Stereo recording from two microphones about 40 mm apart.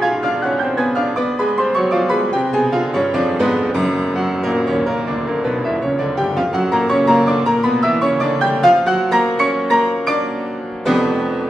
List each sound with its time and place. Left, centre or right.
1.6 s music: centre
6.7 s music: centre